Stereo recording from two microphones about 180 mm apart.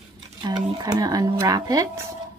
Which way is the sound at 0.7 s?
20° right (ahead or behind).